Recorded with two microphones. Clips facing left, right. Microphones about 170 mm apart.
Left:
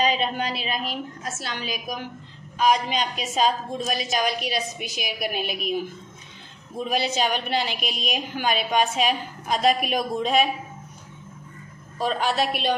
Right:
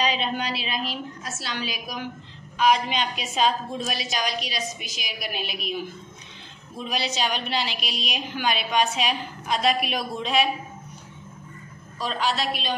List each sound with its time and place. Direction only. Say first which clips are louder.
0.0 s a woman's voice: left 2 dB; 45° left (ahead or behind)
12.0 s a woman's voice: left 3 dB; 50° left (ahead or behind)